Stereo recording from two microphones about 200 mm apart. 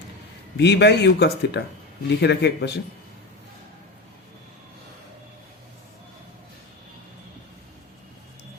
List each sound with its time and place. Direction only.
0.5 s speech: 60° left (ahead or behind)